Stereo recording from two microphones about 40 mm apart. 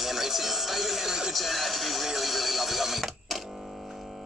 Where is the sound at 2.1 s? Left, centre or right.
Centre.